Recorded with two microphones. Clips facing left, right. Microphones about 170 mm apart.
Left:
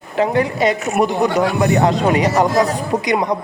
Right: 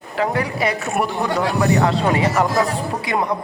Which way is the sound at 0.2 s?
20° left (ahead or behind).